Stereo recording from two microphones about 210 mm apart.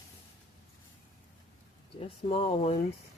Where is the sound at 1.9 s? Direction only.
25° left (ahead or behind).